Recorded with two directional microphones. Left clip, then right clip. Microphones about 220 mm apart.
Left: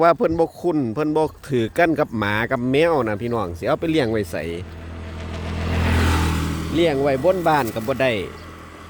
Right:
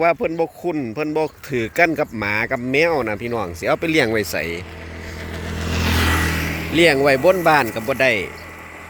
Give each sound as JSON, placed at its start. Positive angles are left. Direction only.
{"t": 0.0, "sound": "speech", "side_deg": 25}
{"t": 5.3, "sound": "vehicle", "side_deg": -45}
{"t": 6.2, "sound": "vehicle", "side_deg": 25}
{"t": 6.7, "sound": "speech", "side_deg": -10}
{"t": 7.4, "sound": "speech", "side_deg": 0}